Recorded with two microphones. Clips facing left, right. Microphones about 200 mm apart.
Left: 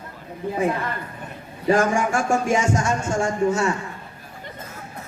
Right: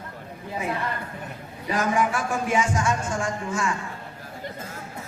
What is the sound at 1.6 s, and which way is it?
Speech, 50° left (ahead or behind).